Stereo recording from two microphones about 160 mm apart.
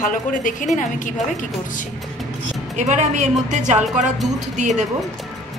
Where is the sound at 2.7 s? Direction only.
45° right (ahead or behind).